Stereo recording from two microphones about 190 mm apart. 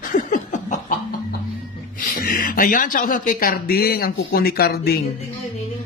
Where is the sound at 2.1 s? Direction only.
50° left (ahead or behind).